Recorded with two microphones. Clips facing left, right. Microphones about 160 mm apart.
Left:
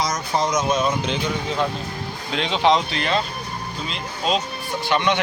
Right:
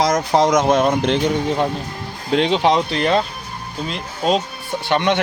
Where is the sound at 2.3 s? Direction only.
50° right (ahead or behind).